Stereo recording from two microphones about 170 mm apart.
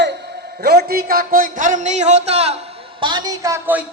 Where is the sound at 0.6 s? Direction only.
70° right (ahead or behind); by 2.6 s 40° right (ahead or behind).